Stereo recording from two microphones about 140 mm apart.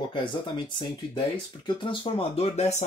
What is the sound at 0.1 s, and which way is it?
Speech, 35° left (ahead or behind).